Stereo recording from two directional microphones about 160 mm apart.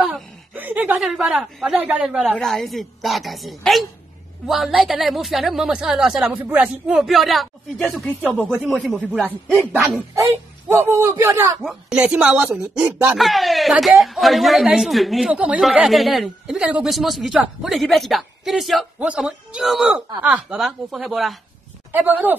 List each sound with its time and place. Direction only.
0.0 s speech: 5° right (ahead or behind)
8.5 s a man's voice: 10° right (ahead or behind)
21.9 s a man's voice: 10° right (ahead or behind)